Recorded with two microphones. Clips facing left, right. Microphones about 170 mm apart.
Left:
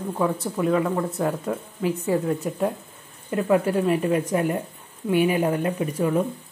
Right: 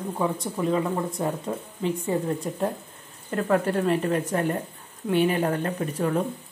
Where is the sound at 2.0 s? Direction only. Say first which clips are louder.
Left 5 dB; 5° left (ahead or behind).